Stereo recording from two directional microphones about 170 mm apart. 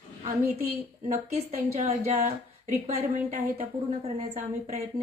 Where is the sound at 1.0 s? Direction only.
40° right (ahead or behind).